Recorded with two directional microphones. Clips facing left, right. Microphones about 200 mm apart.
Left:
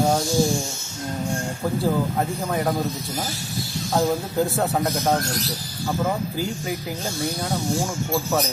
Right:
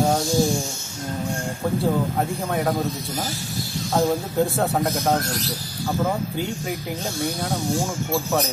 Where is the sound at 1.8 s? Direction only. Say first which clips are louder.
Even; centre (ahead or behind).